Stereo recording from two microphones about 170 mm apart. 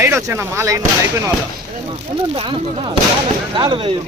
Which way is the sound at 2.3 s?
25° right (ahead or behind).